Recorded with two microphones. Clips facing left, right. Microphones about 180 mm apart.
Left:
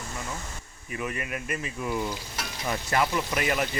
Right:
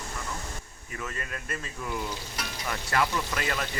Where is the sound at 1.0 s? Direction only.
15° left (ahead or behind).